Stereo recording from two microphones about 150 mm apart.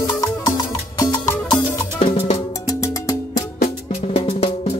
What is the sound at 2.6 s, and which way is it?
Music, 20° left (ahead or behind).